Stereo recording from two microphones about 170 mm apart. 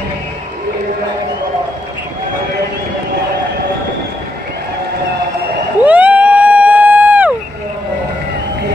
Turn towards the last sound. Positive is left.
turn(degrees=-10)  # may be behind; listen again after turning